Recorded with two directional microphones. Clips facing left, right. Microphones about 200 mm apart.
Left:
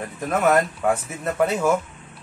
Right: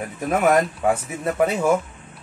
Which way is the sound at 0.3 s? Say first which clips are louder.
Right 1 dB; 15° right (ahead or behind).